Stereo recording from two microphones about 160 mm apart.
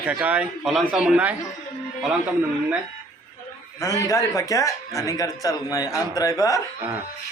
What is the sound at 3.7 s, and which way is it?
A man's voice, 20° left (ahead or behind).